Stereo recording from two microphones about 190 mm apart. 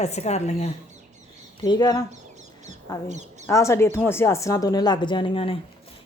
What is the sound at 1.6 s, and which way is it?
Speech, 20° left (ahead or behind).